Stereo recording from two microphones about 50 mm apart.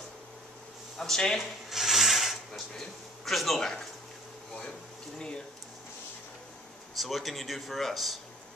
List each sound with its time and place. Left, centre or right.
0.9 s a man's voice: centre
1.4 s a sound: centre
2.8 s a man's voice: centre
7.0 s speech: centre